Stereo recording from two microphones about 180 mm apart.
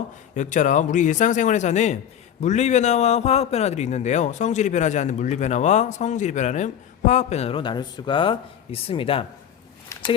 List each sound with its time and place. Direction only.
0.3 s a man's voice: 45° left (ahead or behind)